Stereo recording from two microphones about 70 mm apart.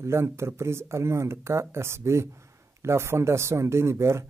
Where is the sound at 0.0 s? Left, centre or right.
Right.